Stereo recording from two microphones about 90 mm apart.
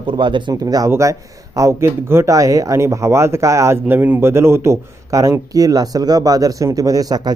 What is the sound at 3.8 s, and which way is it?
A man's voice, 20° right (ahead or behind).